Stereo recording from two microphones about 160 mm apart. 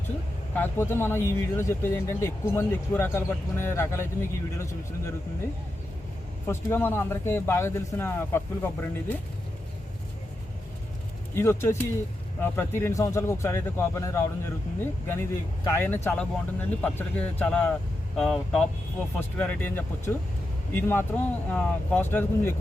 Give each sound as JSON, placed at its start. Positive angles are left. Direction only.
{"t": 0.5, "sound": "speech", "side_deg": 15}
{"t": 6.5, "sound": "speech", "side_deg": 15}
{"t": 11.3, "sound": "speech", "side_deg": 15}